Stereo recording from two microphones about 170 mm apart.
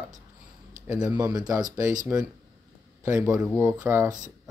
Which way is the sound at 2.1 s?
10° right (ahead or behind).